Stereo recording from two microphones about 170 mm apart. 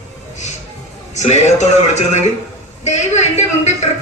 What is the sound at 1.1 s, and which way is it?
A man's voice, 40° left (ahead or behind).